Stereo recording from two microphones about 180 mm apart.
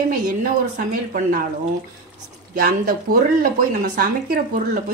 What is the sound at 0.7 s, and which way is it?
Speech, 50° right (ahead or behind).